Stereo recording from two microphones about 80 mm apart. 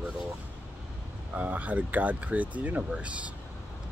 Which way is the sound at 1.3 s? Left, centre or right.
Centre.